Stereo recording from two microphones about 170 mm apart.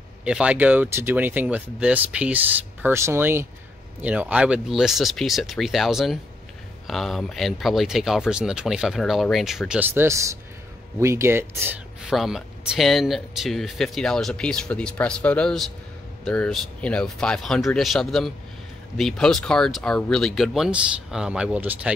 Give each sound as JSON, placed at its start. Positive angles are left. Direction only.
{"t": 0.2, "sound": "speech", "side_deg": -5}
{"t": 12.1, "sound": "speech", "side_deg": 0}